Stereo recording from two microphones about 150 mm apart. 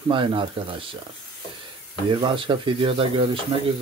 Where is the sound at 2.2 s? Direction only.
35° right (ahead or behind).